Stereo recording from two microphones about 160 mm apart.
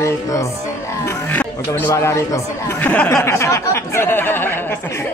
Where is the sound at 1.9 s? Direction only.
15° left (ahead or behind).